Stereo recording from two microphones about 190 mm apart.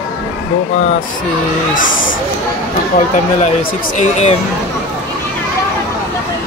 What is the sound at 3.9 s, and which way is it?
Speech, 35° left (ahead or behind).